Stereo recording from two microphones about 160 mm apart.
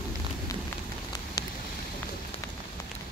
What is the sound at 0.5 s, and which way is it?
Rain on surface, 20° left (ahead or behind).